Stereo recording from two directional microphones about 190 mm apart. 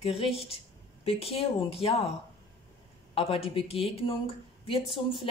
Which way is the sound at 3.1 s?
30° left (ahead or behind).